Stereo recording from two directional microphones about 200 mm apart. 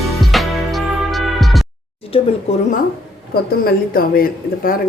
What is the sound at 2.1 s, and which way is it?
Speech, 30° left (ahead or behind).